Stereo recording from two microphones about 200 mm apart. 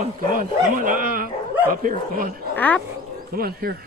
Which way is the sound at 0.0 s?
45° right (ahead or behind).